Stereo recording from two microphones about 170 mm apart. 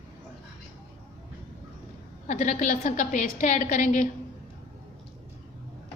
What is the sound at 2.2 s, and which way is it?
A woman's voice, 45° left (ahead or behind).